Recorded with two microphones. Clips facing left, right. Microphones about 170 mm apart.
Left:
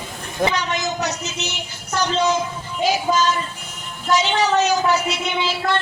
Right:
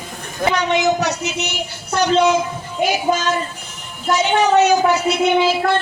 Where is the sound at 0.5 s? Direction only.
60° right (ahead or behind).